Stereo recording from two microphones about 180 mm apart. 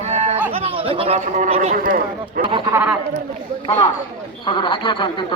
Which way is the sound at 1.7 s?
50° right (ahead or behind).